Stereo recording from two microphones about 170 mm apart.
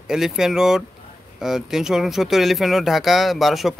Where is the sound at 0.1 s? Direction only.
5° right (ahead or behind).